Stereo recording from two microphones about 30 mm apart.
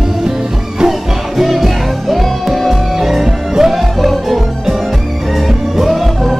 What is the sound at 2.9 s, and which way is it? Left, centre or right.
Music, centre.